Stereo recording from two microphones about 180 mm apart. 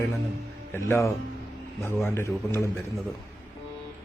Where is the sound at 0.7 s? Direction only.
10° left (ahead or behind).